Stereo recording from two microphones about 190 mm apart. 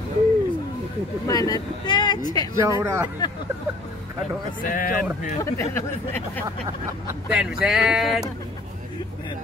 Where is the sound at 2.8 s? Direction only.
15° right (ahead or behind).